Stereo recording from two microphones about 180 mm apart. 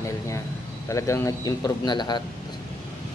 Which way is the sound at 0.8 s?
15° left (ahead or behind).